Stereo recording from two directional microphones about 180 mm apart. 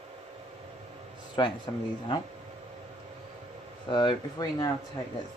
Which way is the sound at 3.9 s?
25° left (ahead or behind).